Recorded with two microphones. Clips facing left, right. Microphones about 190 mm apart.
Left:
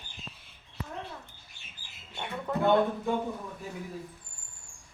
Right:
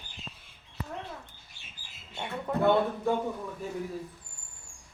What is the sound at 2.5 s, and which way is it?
Speech, 5° right (ahead or behind).